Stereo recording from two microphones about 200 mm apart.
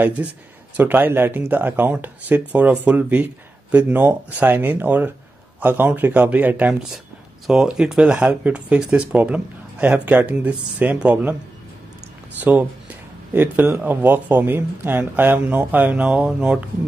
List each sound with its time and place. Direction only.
0.2 s speech: 10° right (ahead or behind)
12.4 s speech: 10° right (ahead or behind)